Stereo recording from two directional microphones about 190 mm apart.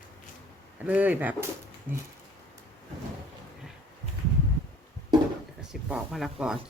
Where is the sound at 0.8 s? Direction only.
10° right (ahead or behind).